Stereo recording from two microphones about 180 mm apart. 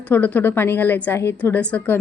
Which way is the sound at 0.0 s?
10° left (ahead or behind).